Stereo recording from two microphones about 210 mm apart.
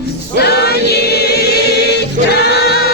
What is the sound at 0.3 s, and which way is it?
Choir, 50° left (ahead or behind).